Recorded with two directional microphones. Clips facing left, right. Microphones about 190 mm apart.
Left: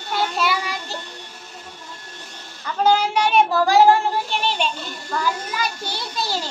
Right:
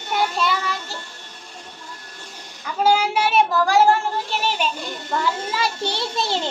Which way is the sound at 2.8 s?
10° right (ahead or behind).